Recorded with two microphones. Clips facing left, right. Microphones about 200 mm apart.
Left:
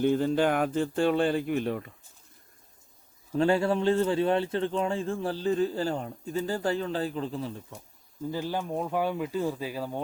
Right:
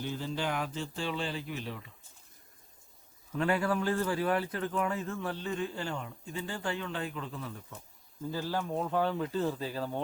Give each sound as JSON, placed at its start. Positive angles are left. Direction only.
{"t": 0.0, "sound": "speech", "side_deg": 55}
{"t": 3.3, "sound": "a man's voice", "side_deg": 30}
{"t": 8.2, "sound": "speech", "side_deg": 15}